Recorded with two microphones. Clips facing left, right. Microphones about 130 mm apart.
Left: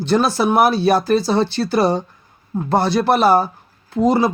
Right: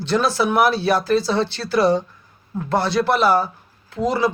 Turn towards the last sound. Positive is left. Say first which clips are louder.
# left 4 dB
turn(degrees=40)  # may be behind; listen again after turning